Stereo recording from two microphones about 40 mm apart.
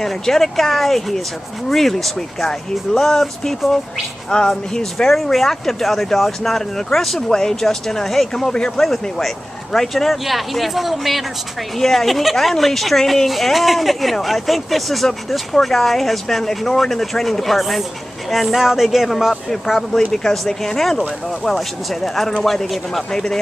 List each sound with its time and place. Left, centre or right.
0.0 s speech: centre
4.3 s speech: left; by 19.3 s centre
19.9 s speech: centre